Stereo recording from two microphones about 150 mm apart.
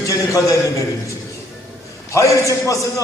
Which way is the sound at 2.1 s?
20° left (ahead or behind).